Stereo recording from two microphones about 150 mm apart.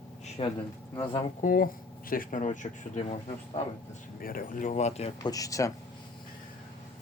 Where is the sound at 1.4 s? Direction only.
65° left (ahead or behind).